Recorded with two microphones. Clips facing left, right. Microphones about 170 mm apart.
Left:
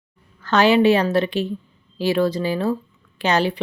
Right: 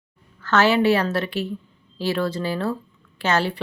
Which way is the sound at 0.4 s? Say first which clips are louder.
Left 3 dB; 15° left (ahead or behind).